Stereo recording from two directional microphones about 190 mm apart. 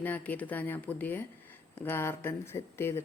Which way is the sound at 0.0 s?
10° left (ahead or behind).